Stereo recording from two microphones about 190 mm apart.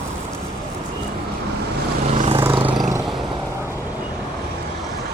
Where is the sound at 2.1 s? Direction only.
30° right (ahead or behind).